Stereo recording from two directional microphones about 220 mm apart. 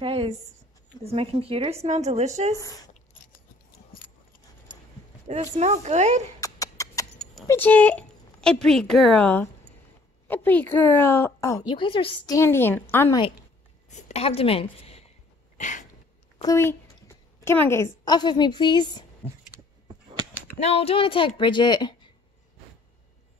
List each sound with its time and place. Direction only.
0.0 s speech: 25° right (ahead or behind)
2.5 s a woman's voice: 15° left (ahead or behind)
5.3 s speech: 30° right (ahead or behind)
6.4 s a sound: 15° left (ahead or behind)
7.4 s a woman's voice: 10° left (ahead or behind)
13.8 s a woman's voice: 30° left (ahead or behind)
15.5 s a sound: 35° left (ahead or behind)
16.3 s a woman's voice: 15° left (ahead or behind)
20.5 s speech: 30° left (ahead or behind)